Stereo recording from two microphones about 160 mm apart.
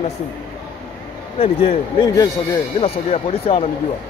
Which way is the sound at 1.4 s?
35° left (ahead or behind).